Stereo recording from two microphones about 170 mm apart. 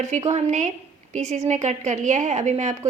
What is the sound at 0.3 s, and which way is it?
A woman's voice, 45° right (ahead or behind).